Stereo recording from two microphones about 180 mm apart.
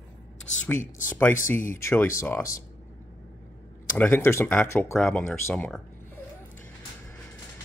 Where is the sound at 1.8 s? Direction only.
15° left (ahead or behind).